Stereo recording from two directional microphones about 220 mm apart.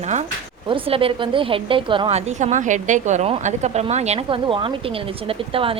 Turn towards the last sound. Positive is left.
turn(degrees=-25)  # may be behind; listen again after turning